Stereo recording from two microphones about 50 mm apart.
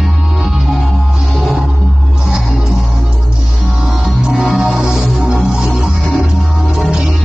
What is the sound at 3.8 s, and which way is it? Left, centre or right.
Music, centre.